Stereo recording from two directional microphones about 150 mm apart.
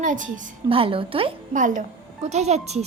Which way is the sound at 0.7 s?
35° right (ahead or behind).